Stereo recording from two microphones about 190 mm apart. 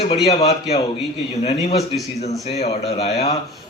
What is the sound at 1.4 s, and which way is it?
A man's voice, 35° left (ahead or behind).